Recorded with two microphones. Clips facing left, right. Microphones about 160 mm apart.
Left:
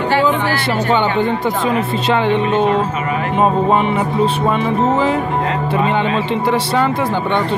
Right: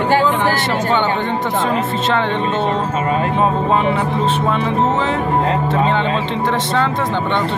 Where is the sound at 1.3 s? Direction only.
45° right (ahead or behind).